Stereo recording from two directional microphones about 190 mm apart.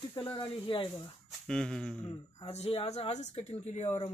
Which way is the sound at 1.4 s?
5° left (ahead or behind).